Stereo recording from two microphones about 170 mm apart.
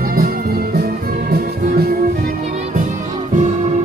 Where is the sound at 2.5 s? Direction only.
45° right (ahead or behind).